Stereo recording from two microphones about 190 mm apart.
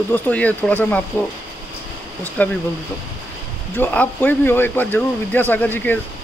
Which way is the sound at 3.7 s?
10° left (ahead or behind).